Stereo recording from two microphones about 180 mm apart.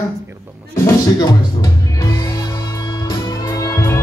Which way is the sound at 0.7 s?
20° left (ahead or behind).